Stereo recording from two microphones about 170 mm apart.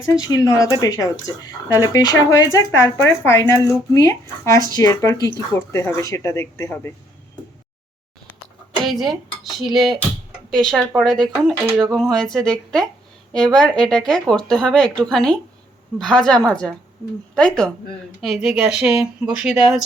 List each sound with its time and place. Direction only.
0.2 s speech: 20° left (ahead or behind)
8.8 s speech: centre (ahead or behind)